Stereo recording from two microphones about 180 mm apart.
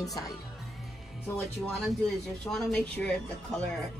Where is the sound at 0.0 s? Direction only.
20° left (ahead or behind).